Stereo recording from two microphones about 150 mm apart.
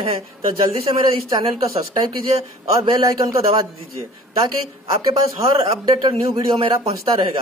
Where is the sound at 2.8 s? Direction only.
25° right (ahead or behind).